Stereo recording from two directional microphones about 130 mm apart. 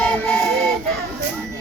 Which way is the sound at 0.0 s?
5° left (ahead or behind).